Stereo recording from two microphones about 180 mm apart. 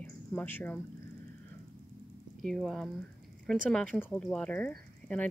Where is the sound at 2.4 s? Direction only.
Centre (ahead or behind).